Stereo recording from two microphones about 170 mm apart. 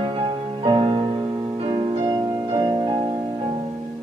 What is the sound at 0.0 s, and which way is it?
Music, 30° right (ahead or behind).